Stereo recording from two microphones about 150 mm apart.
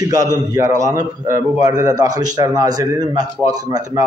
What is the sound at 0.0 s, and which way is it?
A man's voice, 25° right (ahead or behind).